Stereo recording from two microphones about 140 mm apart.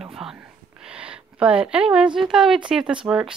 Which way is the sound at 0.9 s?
10° right (ahead or behind).